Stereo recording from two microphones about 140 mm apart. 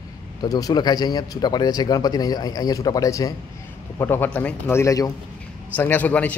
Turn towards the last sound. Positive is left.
turn(degrees=10)  # may be behind; listen again after turning